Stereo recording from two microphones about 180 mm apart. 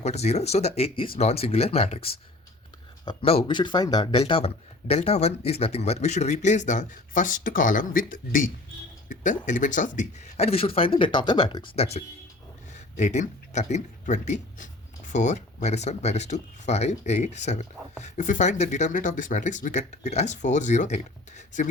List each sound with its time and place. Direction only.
0.0 s speech: 35° left (ahead or behind)